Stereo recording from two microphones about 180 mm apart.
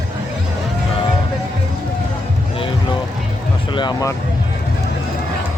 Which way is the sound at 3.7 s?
20° left (ahead or behind).